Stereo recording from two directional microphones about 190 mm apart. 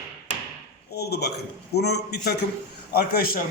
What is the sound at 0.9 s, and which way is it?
A man's voice, 60° left (ahead or behind).